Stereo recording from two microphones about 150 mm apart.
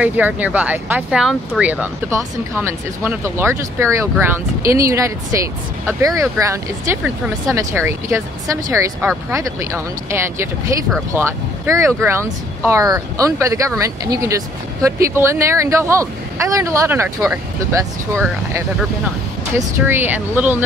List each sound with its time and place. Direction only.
0.0 s speech: 10° right (ahead or behind)
19.9 s speech: 15° right (ahead or behind)